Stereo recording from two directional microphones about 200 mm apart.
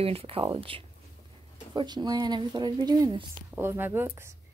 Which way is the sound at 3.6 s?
10° right (ahead or behind).